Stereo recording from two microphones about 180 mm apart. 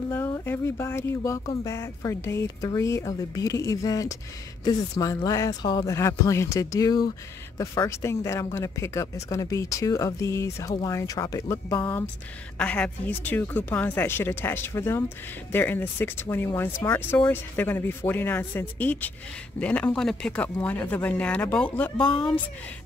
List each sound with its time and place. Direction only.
0.1 s speech: 15° left (ahead or behind)